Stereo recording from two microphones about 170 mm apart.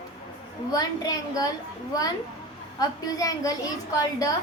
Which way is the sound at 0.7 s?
20° left (ahead or behind).